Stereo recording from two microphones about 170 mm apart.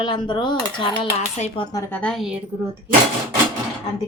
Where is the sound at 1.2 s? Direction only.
40° left (ahead or behind).